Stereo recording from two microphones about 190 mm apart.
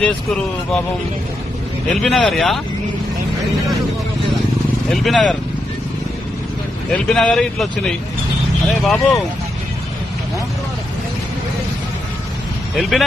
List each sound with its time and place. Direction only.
0.0 s speech: 5° left (ahead or behind)
2.0 s speech: centre (ahead or behind)
4.9 s speech: 5° left (ahead or behind)
6.9 s speech: 5° left (ahead or behind)
12.7 s speech: centre (ahead or behind)